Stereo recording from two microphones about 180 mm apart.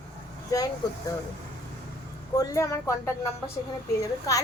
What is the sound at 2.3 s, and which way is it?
A woman's voice, 20° left (ahead or behind).